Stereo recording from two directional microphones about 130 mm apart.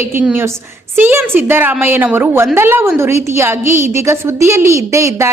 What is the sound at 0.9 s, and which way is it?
A woman's voice, 15° right (ahead or behind).